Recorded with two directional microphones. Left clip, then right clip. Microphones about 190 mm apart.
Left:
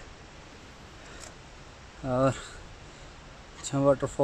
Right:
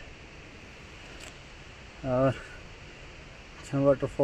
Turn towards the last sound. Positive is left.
turn(degrees=10)  # may be behind; listen again after turning